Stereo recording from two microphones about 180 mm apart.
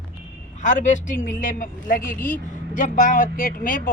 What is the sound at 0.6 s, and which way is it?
Speech, 45° left (ahead or behind).